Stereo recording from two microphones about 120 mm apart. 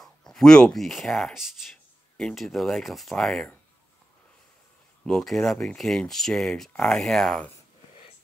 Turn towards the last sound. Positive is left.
turn(degrees=5)  # may be behind; listen again after turning